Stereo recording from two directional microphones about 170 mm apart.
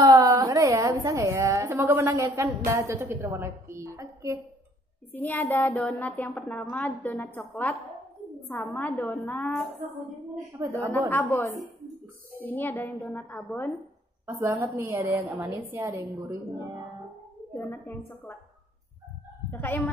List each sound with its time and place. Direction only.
0.0 s a woman's voice: 20° right (ahead or behind)
5.1 s a woman's voice: 10° left (ahead or behind)
10.6 s a woman's voice: 15° right (ahead or behind)
10.9 s a woman's voice: 10° left (ahead or behind)
14.2 s a woman's voice: 15° right (ahead or behind)
17.6 s a woman's voice: 10° left (ahead or behind)
19.5 s a woman's voice: 10° left (ahead or behind)